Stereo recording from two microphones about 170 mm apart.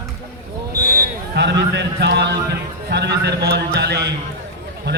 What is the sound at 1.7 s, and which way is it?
A man's voice, 90° right.